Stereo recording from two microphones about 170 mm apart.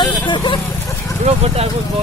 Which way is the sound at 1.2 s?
40° right (ahead or behind).